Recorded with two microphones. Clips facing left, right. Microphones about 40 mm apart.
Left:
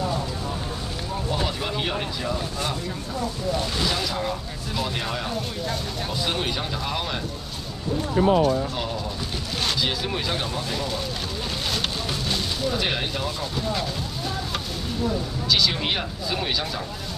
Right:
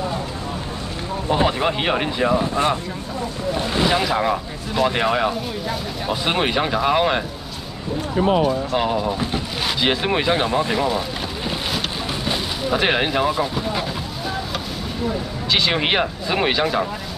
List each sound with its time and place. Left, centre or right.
1.3 s speech: right
8.4 s speech: right
12.7 s speech: right
15.5 s speech: right